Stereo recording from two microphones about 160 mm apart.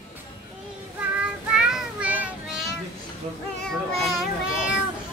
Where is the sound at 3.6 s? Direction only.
Centre (ahead or behind).